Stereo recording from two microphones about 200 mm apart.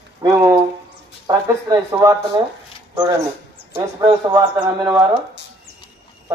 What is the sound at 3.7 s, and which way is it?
Speech, 25° right (ahead or behind).